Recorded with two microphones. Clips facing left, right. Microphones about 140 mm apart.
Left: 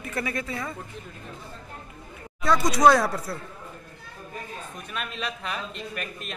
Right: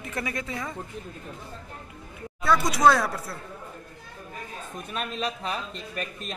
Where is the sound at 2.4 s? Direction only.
5° right (ahead or behind).